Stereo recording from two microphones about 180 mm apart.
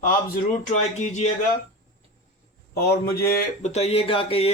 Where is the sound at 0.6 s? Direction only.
40° left (ahead or behind).